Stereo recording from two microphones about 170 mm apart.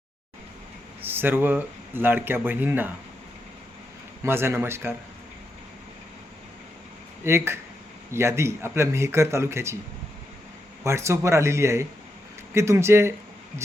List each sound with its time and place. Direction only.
1.0 s speech: 10° right (ahead or behind)
4.2 s speech: 15° right (ahead or behind)
7.3 s speech: 15° right (ahead or behind)
10.8 s speech: 15° right (ahead or behind)